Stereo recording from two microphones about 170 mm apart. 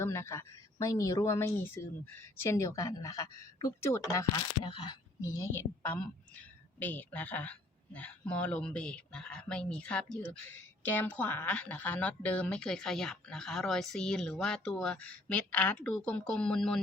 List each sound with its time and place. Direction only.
0.0 s a woman's voice: 15° left (ahead or behind)
5.4 s a woman's voice: 10° left (ahead or behind)